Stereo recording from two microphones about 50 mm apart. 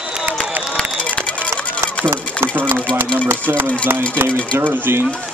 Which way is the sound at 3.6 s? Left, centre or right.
Left.